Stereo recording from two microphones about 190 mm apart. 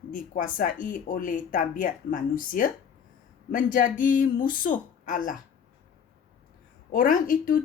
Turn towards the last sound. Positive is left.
turn(degrees=45)  # may be behind; listen again after turning